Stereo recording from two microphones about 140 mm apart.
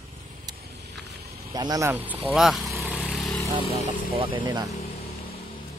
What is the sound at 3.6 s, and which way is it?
Speech, 50° right (ahead or behind).